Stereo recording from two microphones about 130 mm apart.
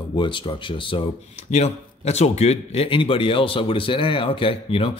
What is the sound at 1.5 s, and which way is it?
Speech, 60° left (ahead or behind).